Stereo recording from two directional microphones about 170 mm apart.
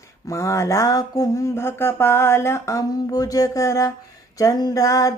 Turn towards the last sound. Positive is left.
turn(degrees=20)  # may be behind; listen again after turning